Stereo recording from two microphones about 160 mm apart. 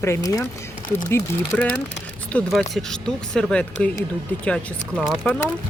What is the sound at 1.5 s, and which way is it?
Speech, 10° left (ahead or behind).